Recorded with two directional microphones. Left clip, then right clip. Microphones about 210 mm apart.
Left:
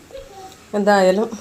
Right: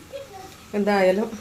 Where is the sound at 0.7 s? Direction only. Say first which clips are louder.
Left 5 dB; 25° left (ahead or behind).